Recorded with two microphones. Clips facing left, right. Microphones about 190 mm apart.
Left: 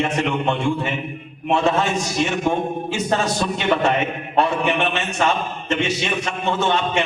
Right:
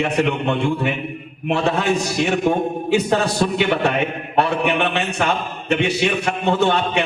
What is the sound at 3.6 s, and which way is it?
A man's voice, 60° right (ahead or behind).